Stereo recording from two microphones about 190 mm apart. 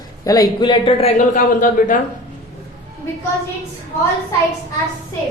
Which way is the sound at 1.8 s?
50° left (ahead or behind).